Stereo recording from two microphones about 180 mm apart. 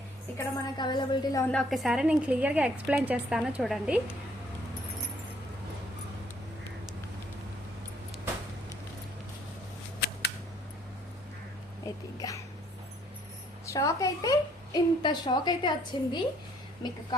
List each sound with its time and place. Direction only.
0.3 s a woman's voice: 25° left (ahead or behind)
1.5 s a woman's voice: centre (ahead or behind)
11.9 s a sound: 15° left (ahead or behind)
13.7 s a woman's voice: 20° left (ahead or behind)